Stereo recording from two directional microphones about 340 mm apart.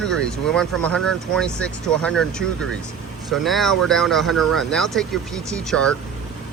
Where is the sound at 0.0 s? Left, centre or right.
Centre.